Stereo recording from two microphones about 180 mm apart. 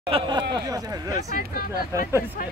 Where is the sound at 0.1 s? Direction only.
25° right (ahead or behind).